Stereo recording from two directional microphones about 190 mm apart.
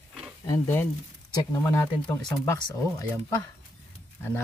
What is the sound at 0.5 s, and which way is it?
Speech, 15° left (ahead or behind).